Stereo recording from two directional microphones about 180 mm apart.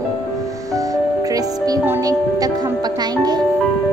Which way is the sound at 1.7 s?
15° right (ahead or behind).